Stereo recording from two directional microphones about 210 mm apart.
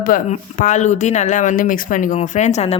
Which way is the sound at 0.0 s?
40° left (ahead or behind).